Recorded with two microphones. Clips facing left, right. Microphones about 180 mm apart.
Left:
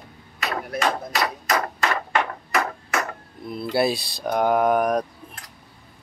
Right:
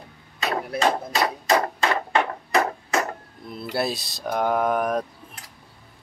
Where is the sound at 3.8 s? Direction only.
Centre (ahead or behind).